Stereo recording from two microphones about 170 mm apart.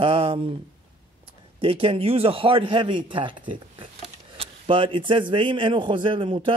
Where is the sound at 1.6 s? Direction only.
35° right (ahead or behind).